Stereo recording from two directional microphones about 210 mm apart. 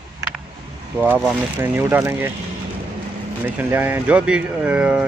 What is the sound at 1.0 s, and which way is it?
A man's voice, 10° right (ahead or behind).